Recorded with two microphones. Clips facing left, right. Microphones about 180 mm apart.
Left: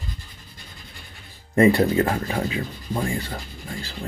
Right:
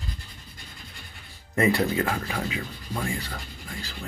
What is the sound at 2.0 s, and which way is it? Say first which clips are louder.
Speech: left 5 dB; 35° left (ahead or behind).